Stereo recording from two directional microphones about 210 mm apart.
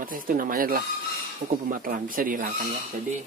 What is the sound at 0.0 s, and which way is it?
Speech, 40° right (ahead or behind).